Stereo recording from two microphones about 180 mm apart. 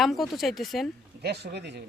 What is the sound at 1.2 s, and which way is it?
Speech, 65° right (ahead or behind).